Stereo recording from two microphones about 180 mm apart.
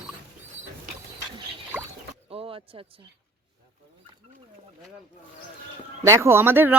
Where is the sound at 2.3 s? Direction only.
30° right (ahead or behind).